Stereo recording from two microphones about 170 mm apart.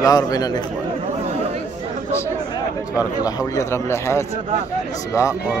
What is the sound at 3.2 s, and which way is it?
A man's voice, 20° left (ahead or behind).